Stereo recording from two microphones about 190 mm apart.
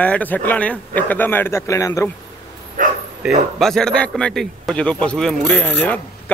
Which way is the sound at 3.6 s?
5° left (ahead or behind).